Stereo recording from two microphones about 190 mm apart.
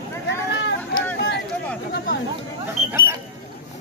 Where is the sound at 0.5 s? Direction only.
75° left (ahead or behind).